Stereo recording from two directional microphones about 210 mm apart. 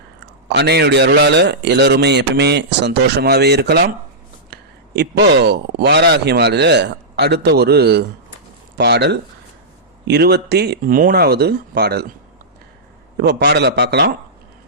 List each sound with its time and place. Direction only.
0.4 s a man's voice: 55° right (ahead or behind)
13.1 s a man's voice: 50° right (ahead or behind)